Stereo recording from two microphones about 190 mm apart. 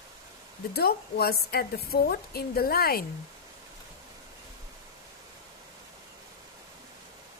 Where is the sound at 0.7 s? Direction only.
55° left (ahead or behind).